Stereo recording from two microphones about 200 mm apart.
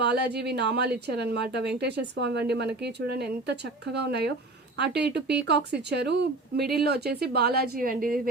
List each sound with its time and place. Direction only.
0.3 s a woman's voice: 55° right (ahead or behind)